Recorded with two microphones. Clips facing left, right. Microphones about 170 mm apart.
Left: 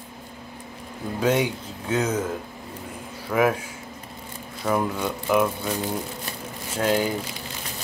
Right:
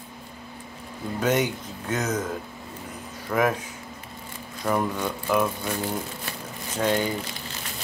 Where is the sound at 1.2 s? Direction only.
10° left (ahead or behind).